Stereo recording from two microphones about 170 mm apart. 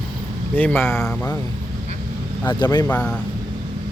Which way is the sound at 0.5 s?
10° left (ahead or behind).